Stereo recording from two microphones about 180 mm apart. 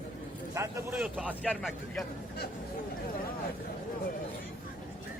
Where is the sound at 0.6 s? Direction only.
15° right (ahead or behind); by 2.0 s centre (ahead or behind).